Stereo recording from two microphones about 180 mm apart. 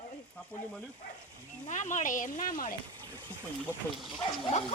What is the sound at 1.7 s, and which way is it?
Speech, 45° left (ahead or behind).